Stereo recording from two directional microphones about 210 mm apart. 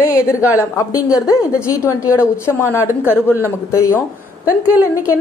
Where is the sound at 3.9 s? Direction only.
15° left (ahead or behind).